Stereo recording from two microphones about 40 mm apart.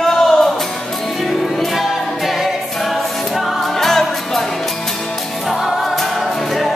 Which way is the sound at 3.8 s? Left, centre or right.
Centre.